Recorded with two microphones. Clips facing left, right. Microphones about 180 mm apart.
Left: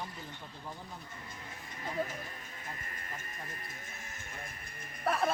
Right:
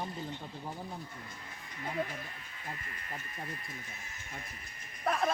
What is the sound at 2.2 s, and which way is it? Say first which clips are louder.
Speech: left 1 dB; 40° left (ahead or behind).